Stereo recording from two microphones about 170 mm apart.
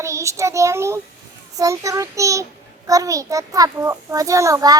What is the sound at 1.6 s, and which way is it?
A child's voice, 20° right (ahead or behind).